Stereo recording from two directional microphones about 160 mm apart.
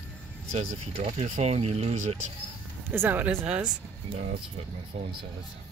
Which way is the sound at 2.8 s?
15° right (ahead or behind).